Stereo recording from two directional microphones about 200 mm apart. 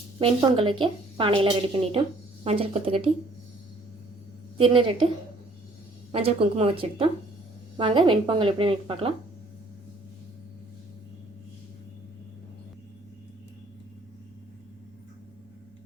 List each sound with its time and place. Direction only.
0.2 s a woman's voice: 25° right (ahead or behind)
4.5 s a woman's voice: 25° right (ahead or behind)
6.1 s a woman's voice: 30° right (ahead or behind)